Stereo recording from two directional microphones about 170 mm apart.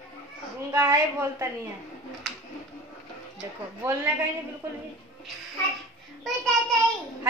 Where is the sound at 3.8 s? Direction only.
15° right (ahead or behind).